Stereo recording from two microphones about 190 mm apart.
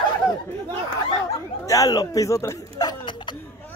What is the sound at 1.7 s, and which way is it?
Speech, 20° left (ahead or behind).